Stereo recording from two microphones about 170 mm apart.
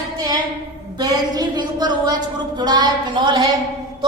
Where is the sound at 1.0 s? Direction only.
25° right (ahead or behind).